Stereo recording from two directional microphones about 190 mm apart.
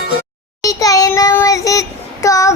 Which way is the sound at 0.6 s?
20° left (ahead or behind).